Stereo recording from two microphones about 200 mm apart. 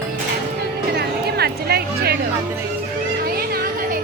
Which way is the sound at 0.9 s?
55° right (ahead or behind).